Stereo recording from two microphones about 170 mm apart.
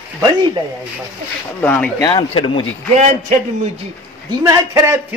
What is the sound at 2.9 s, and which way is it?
Speech, 40° right (ahead or behind).